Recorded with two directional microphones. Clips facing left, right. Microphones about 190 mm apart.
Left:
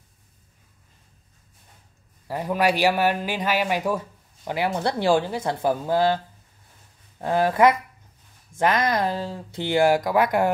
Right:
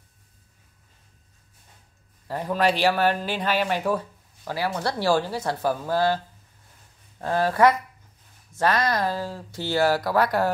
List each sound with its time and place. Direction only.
2.2 s a man's voice: 10° left (ahead or behind)